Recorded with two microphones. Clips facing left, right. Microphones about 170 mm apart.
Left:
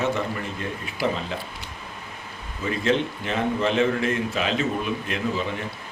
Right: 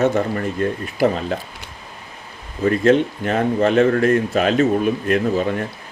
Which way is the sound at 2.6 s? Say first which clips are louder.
Right 8 dB; 50° right (ahead or behind).